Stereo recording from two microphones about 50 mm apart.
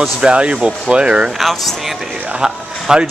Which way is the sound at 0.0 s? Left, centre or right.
Centre.